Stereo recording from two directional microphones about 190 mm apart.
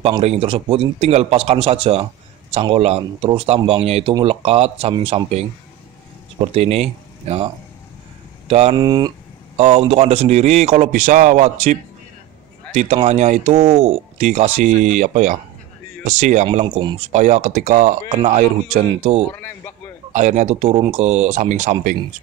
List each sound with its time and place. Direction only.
0.2 s speech: 30° right (ahead or behind)
8.7 s speech: 20° right (ahead or behind)
9.6 s speech: 35° right (ahead or behind)
17.1 s speech: 40° right (ahead or behind)
19.3 s speech: 10° left (ahead or behind)
20.1 s speech: 40° right (ahead or behind)